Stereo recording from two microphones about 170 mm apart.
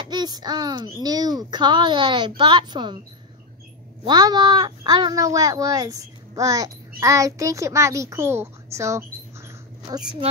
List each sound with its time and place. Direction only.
0.1 s a child's voice: 25° right (ahead or behind)
4.0 s speech: 25° right (ahead or behind)